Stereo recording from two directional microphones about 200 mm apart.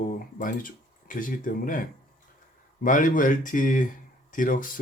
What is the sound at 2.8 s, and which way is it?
Speech, 40° left (ahead or behind).